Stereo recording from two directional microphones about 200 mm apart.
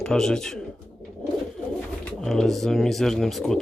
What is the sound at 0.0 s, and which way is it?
Speech, 5° left (ahead or behind).